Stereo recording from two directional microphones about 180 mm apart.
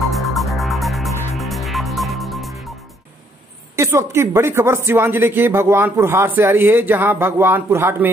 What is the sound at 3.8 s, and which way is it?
Speech, 15° right (ahead or behind).